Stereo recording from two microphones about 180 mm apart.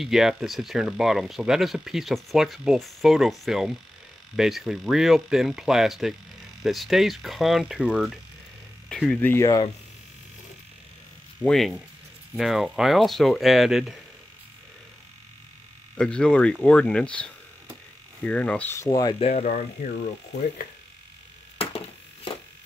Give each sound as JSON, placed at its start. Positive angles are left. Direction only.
{"t": 0.0, "sound": "speech", "side_deg": 0}
{"t": 9.3, "sound": "speech", "side_deg": 20}
{"t": 11.4, "sound": "speech", "side_deg": 5}
{"t": 16.0, "sound": "speech", "side_deg": 5}
{"t": 18.9, "sound": "speech", "side_deg": 25}
{"t": 19.2, "sound": "speech", "side_deg": 40}
{"t": 21.5, "sound": "a sound", "side_deg": 30}